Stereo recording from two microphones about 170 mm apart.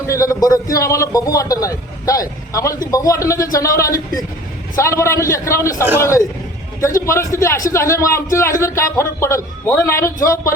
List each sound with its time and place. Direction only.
0.1 s a man's voice: 20° left (ahead or behind)